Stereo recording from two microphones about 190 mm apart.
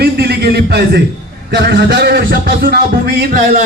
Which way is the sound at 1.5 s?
60° right (ahead or behind).